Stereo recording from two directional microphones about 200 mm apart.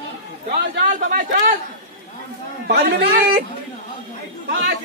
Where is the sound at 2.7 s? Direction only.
60° right (ahead or behind).